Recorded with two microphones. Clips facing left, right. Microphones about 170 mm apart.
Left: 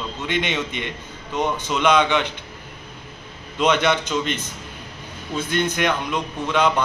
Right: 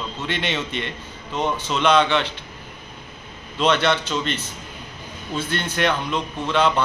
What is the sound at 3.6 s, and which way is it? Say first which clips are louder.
Speech: left 1 dB; 15° left (ahead or behind).